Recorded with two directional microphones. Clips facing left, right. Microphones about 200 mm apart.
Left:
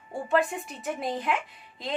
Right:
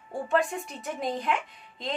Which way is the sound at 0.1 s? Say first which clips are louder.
Left 1 dB; centre (ahead or behind).